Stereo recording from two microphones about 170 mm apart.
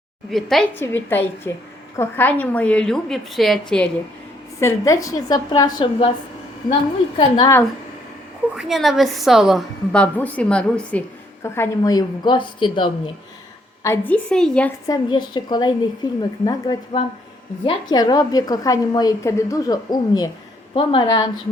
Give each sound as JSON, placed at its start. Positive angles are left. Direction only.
{"t": 0.3, "sound": "a woman's voice", "side_deg": 0}
{"t": 0.7, "sound": "a woman's voice", "side_deg": 10}
{"t": 4.6, "sound": "a woman's voice", "side_deg": 20}
{"t": 7.2, "sound": "a woman's voice", "side_deg": 25}
{"t": 8.5, "sound": "a woman's voice", "side_deg": 0}
{"t": 13.8, "sound": "a woman's voice", "side_deg": 10}
{"t": 14.8, "sound": "a woman's voice", "side_deg": 25}